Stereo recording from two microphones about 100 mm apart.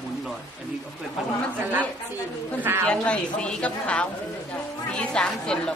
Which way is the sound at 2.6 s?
25° right (ahead or behind).